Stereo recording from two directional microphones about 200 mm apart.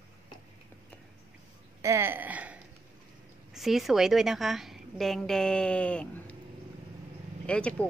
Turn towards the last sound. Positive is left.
turn(degrees=5)  # may be behind; listen again after turning